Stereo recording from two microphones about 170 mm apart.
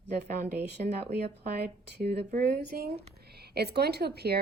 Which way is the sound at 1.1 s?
70° right (ahead or behind).